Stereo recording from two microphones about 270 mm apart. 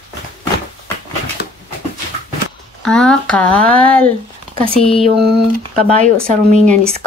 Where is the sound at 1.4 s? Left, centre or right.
Left.